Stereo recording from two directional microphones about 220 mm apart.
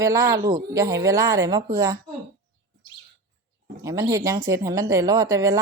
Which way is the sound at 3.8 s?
15° right (ahead or behind).